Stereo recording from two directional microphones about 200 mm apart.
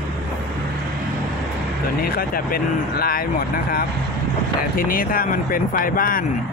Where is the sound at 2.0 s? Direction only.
45° left (ahead or behind).